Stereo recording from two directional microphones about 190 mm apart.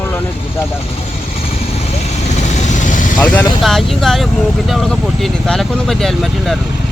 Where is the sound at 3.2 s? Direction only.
10° left (ahead or behind).